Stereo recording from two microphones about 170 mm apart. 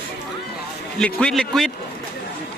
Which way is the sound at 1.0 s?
5° left (ahead or behind).